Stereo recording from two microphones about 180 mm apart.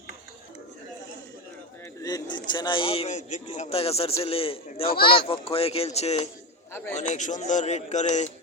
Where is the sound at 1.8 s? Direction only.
20° left (ahead or behind).